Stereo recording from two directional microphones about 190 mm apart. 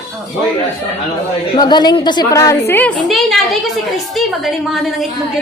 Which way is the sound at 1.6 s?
20° left (ahead or behind).